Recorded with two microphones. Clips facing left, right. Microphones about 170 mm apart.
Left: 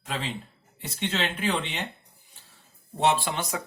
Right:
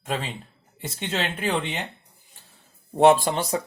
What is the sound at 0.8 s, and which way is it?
Speech, 50° right (ahead or behind).